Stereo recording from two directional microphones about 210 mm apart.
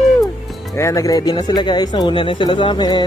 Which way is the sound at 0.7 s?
15° left (ahead or behind).